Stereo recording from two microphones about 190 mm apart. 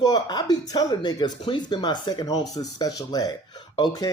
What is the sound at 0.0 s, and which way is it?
Speech, 20° left (ahead or behind).